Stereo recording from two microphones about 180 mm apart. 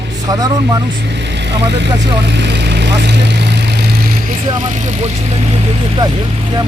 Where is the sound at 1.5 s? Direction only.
75° right (ahead or behind).